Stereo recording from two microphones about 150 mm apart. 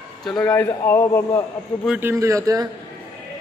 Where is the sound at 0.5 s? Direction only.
15° left (ahead or behind).